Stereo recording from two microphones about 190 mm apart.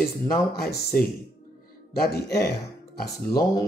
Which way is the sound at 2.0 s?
60° left (ahead or behind).